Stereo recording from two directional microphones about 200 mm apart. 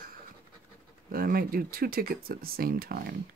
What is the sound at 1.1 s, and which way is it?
Speech, 45° right (ahead or behind).